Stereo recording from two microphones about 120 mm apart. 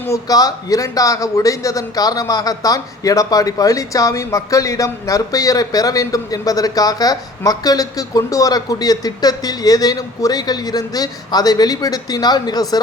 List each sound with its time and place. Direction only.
0.0 s a man's voice: 30° left (ahead or behind)